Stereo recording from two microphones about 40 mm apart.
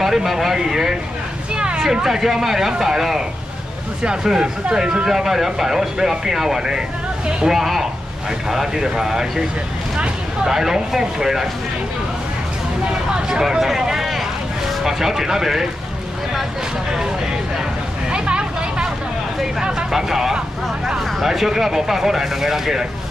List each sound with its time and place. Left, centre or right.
0.0 s speech: centre
1.5 s speech: right
4.0 s speech: centre
10.4 s speech: centre
13.1 s speech: centre
18.1 s a sound: right
19.4 s speech: centre